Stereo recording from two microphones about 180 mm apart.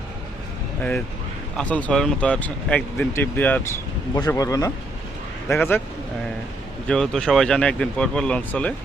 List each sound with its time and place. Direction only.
0.8 s speech: 5° left (ahead or behind)
6.8 s speech: 5° left (ahead or behind)